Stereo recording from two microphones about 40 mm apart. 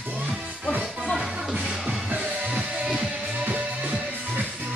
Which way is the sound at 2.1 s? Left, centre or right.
Right.